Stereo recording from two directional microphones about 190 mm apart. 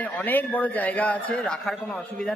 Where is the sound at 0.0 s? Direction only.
10° left (ahead or behind).